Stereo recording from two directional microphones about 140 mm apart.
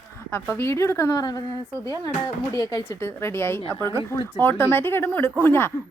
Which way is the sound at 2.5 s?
25° left (ahead or behind).